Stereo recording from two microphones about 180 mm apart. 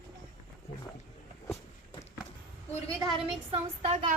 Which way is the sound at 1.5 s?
20° left (ahead or behind).